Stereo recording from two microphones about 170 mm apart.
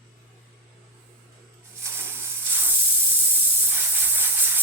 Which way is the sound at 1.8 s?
15° right (ahead or behind).